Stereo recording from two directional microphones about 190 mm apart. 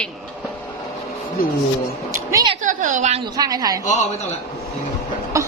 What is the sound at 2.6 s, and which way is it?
Speech, 40° right (ahead or behind).